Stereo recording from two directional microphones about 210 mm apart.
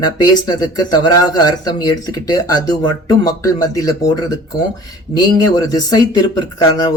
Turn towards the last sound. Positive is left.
turn(degrees=20)  # may be behind; listen again after turning